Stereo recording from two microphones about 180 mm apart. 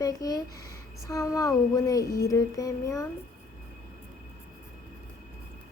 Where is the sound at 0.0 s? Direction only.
20° left (ahead or behind).